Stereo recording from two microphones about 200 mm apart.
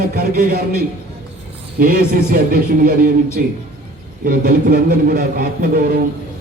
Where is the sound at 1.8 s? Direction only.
50° right (ahead or behind).